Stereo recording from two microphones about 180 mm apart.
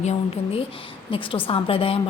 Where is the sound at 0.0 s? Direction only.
35° left (ahead or behind).